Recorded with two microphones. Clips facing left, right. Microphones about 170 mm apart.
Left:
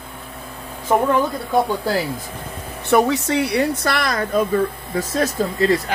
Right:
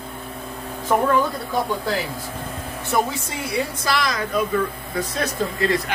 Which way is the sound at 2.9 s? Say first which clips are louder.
Left 7 dB; 75° left (ahead or behind).